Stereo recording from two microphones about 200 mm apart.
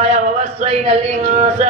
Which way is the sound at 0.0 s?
35° right (ahead or behind).